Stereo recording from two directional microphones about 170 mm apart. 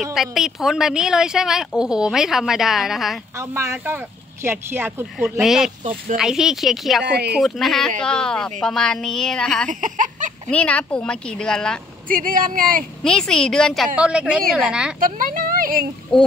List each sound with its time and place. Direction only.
0.0 s a woman's voice: centre (ahead or behind)
3.3 s speech: 15° right (ahead or behind)
5.4 s a woman's voice: centre (ahead or behind)
7.1 s speech: 75° right (ahead or behind)
7.3 s a woman's voice: centre (ahead or behind)
9.7 s a sound: 50° right (ahead or behind)
10.5 s a woman's voice: 5° left (ahead or behind)
12.1 s speech: 55° right (ahead or behind)
13.0 s a woman's voice: 5° left (ahead or behind)
13.9 s a woman's voice: 5° right (ahead or behind)
15.0 s a sound: 55° right (ahead or behind)